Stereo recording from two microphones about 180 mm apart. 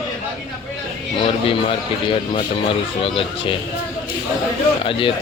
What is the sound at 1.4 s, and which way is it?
A man's voice, 30° left (ahead or behind).